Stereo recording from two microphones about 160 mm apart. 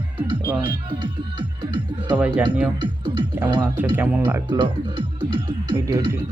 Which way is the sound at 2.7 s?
30° right (ahead or behind).